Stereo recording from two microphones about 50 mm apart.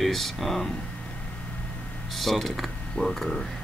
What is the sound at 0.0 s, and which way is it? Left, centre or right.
Speech, centre.